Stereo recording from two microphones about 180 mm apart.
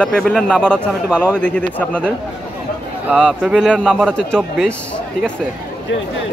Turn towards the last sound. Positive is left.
turn(degrees=0)  # may be behind; listen again after turning